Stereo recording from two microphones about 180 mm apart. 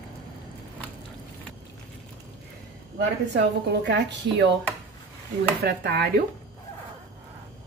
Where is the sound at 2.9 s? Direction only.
70° right (ahead or behind).